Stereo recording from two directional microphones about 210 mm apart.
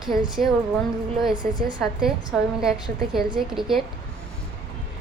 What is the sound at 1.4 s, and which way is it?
Speech, 20° right (ahead or behind).